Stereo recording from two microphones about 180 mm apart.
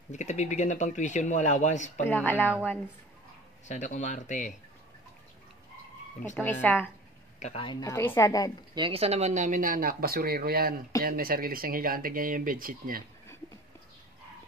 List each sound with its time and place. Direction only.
0.1 s speech: 40° left (ahead or behind)
2.0 s speech: 10° left (ahead or behind)
3.6 s speech: 40° left (ahead or behind)
6.3 s speech: 10° left (ahead or behind)
7.3 s speech: 40° left (ahead or behind)
7.6 s a woman's voice: 20° left (ahead or behind)
8.7 s speech: 30° right (ahead or behind); by 13.0 s 50° right (ahead or behind)